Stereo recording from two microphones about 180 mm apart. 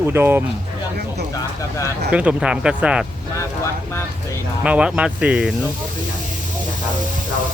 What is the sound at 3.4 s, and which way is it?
Vehicle, 15° left (ahead or behind).